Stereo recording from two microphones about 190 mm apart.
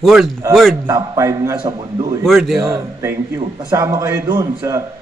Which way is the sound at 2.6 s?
15° right (ahead or behind).